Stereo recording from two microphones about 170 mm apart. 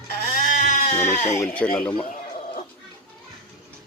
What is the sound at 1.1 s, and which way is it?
Speech, 45° left (ahead or behind).